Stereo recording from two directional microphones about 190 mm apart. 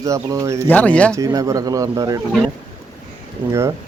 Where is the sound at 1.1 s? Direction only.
20° right (ahead or behind).